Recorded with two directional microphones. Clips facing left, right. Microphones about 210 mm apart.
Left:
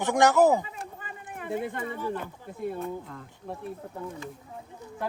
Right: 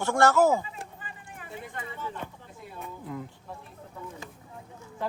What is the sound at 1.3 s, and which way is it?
Speech, 50° left (ahead or behind).